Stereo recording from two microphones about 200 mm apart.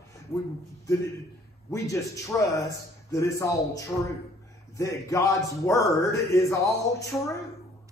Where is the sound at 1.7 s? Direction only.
15° left (ahead or behind).